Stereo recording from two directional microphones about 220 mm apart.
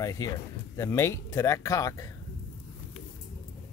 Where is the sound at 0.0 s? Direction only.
15° left (ahead or behind).